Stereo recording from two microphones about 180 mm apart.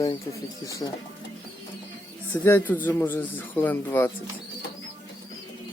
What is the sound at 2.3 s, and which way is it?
A man's voice, 10° left (ahead or behind).